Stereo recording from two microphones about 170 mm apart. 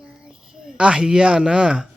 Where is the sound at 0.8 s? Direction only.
5° right (ahead or behind).